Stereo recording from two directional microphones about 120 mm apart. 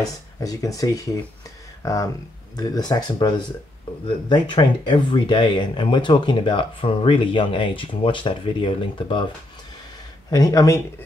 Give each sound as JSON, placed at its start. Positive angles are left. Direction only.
{"t": 0.0, "sound": "speech", "side_deg": 30}
{"t": 2.5, "sound": "speech", "side_deg": 35}
{"t": 10.3, "sound": "speech", "side_deg": 30}